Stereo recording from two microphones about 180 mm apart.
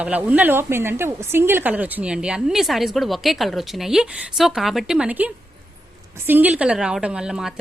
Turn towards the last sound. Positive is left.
turn(degrees=-5)  # may be behind; listen again after turning